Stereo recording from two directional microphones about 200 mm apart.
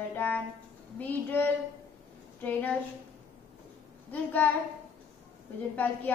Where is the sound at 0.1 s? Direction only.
10° left (ahead or behind).